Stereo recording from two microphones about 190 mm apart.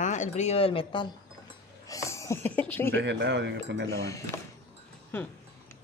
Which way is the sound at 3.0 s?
70° right (ahead or behind).